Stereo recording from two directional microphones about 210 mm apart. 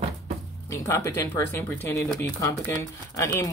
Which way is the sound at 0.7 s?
15° left (ahead or behind).